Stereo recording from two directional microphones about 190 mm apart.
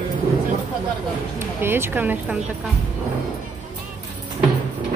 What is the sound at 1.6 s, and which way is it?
Speech, 10° right (ahead or behind).